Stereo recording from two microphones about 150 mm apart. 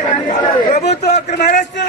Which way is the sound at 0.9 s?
55° left (ahead or behind).